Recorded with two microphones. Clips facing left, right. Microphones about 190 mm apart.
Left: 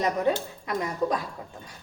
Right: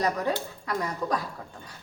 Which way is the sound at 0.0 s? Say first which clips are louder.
Left 2 dB; 20° left (ahead or behind).